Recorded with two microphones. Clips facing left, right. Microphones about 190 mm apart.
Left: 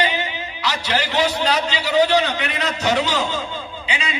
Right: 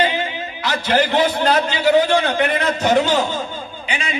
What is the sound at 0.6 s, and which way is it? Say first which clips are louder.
A man's voice: right 5 dB; 50° right (ahead or behind).